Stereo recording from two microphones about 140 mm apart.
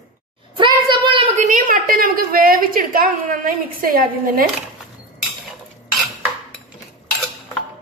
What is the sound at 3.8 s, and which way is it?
Speech, 90° right.